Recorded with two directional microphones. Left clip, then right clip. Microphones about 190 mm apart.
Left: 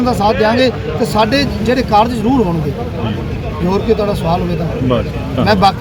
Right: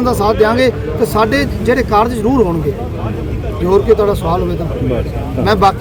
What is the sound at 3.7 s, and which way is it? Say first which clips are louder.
Speech: right 4 dB; 15° right (ahead or behind).